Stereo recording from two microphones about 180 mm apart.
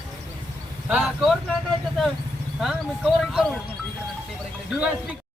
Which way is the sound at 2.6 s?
5° right (ahead or behind).